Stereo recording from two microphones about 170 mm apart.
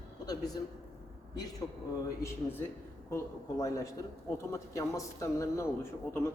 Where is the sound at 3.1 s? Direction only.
20° left (ahead or behind).